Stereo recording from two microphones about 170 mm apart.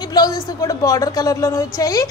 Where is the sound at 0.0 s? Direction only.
25° left (ahead or behind).